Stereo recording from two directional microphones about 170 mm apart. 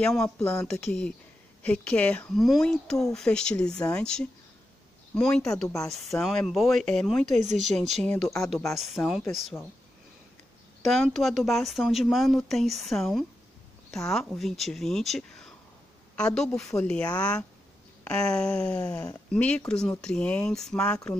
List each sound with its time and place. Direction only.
0.0 s speech: 5° left (ahead or behind)
0.4 s speech: 15° left (ahead or behind)
0.7 s speech: 5° left (ahead or behind)
7.2 s speech: 40° right (ahead or behind)
7.6 s speech: 5° left (ahead or behind)
10.8 s speech: centre (ahead or behind)